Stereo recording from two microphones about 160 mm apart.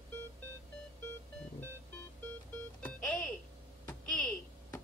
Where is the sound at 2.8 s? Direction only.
5° left (ahead or behind).